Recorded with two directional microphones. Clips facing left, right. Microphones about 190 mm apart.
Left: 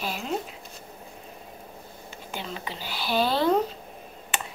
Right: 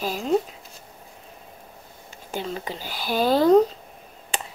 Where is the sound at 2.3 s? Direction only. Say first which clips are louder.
Right 6 dB; 45° right (ahead or behind).